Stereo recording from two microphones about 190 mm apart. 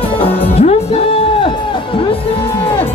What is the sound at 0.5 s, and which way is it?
Music, 35° left (ahead or behind).